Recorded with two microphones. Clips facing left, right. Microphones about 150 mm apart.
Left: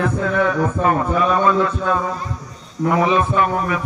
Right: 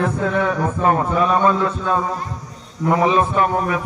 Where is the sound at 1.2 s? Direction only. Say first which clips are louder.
Left 1 dB; 30° right (ahead or behind).